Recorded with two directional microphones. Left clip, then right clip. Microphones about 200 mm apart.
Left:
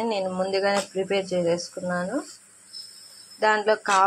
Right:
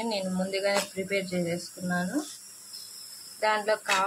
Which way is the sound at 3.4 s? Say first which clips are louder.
Left 5 dB; 15° left (ahead or behind).